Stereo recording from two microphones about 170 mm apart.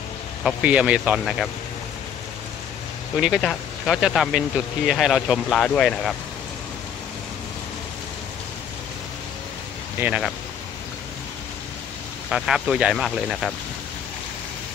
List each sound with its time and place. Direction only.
0.4 s a man's voice: 5° right (ahead or behind)
3.2 s speech: centre (ahead or behind)
9.9 s a man's voice: 10° right (ahead or behind)
12.3 s speech: centre (ahead or behind)